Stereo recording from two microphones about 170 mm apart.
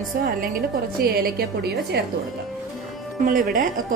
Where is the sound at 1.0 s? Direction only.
65° right (ahead or behind).